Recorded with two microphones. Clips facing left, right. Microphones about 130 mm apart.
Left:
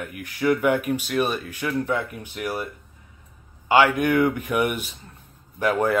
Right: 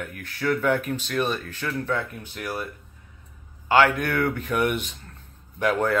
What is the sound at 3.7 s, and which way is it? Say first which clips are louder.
Speech: left 2 dB; 15° left (ahead or behind).